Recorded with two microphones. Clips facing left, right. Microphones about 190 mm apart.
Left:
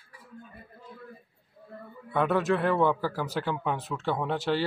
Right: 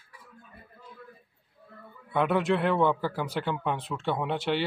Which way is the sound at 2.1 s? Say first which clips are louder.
Even; 5° left (ahead or behind).